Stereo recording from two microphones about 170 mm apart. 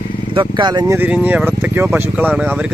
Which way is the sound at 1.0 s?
10° right (ahead or behind).